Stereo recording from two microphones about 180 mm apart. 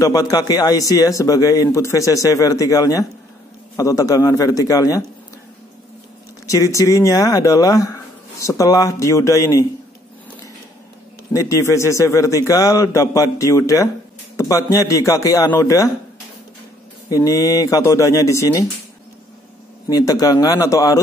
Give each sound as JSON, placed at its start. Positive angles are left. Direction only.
{"t": 0.0, "sound": "speech", "side_deg": 20}
{"t": 6.4, "sound": "speech", "side_deg": 15}
{"t": 11.3, "sound": "speech", "side_deg": 15}
{"t": 17.1, "sound": "speech", "side_deg": 20}
{"t": 19.9, "sound": "speech", "side_deg": 20}